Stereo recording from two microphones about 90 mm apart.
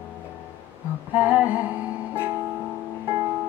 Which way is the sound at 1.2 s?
15° right (ahead or behind).